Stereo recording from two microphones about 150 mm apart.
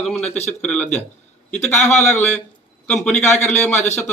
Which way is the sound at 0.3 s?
45° left (ahead or behind).